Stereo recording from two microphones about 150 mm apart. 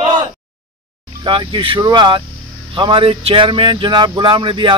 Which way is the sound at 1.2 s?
35° right (ahead or behind).